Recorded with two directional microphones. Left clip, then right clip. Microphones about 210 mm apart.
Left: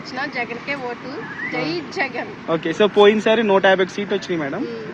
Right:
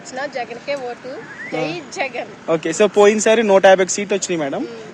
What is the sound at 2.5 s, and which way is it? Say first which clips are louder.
Speech: right 2 dB; 50° right (ahead or behind).